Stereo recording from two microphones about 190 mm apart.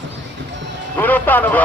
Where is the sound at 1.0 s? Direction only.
10° left (ahead or behind).